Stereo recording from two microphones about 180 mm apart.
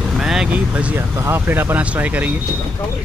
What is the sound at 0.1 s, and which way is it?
Speech, centre (ahead or behind).